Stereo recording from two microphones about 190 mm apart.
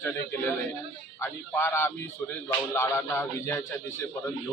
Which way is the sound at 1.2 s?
10° left (ahead or behind).